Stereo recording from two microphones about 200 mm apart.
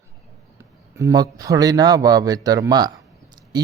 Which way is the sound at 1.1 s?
20° right (ahead or behind).